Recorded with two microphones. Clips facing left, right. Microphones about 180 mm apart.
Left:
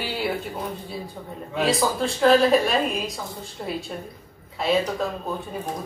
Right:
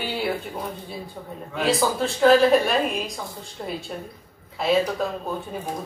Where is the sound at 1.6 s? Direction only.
Centre (ahead or behind).